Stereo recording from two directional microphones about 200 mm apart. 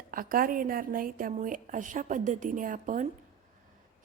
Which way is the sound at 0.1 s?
45° right (ahead or behind).